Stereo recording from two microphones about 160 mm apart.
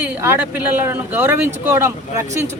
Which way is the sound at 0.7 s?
15° right (ahead or behind).